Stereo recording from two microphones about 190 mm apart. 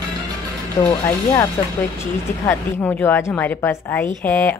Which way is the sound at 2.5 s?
10° left (ahead or behind).